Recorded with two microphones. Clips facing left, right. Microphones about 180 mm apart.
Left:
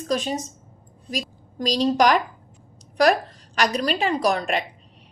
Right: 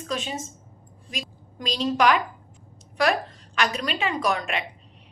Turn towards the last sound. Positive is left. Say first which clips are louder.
# left 4 dB
turn(degrees=35)  # may be behind; listen again after turning